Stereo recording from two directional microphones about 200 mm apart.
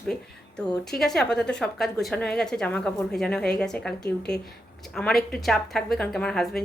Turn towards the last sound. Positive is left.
turn(degrees=0)  # may be behind; listen again after turning